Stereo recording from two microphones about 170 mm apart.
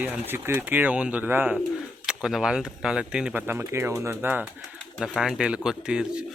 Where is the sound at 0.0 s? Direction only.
10° right (ahead or behind).